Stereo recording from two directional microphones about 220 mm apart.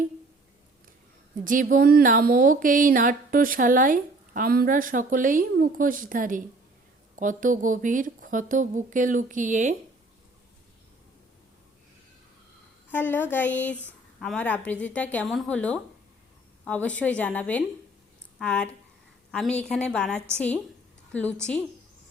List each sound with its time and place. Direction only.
1.5 s speech: 35° right (ahead or behind)
12.9 s a woman's voice: 10° left (ahead or behind)
20.1 s a woman's voice: 10° right (ahead or behind)
21.1 s speech: 5° left (ahead or behind)